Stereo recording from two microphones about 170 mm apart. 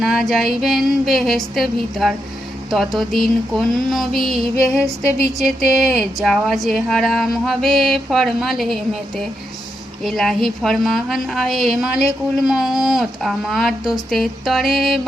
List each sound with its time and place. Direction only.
0.0 s speech: centre (ahead or behind)